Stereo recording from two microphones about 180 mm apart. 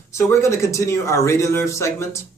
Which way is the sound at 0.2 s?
15° left (ahead or behind).